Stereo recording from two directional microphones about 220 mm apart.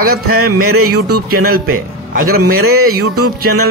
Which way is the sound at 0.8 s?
90° right.